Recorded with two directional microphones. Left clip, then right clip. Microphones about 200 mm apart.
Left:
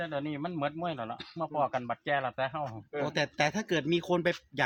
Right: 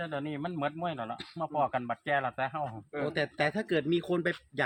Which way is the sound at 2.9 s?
50° left (ahead or behind).